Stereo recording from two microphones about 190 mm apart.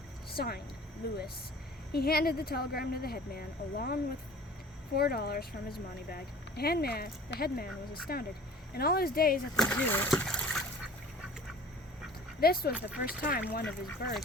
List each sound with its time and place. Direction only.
0.3 s speech: 55° left (ahead or behind)
9.6 s speech: 5° left (ahead or behind)
10.1 s splash: 5° left (ahead or behind)
12.4 s speech: 55° left (ahead or behind)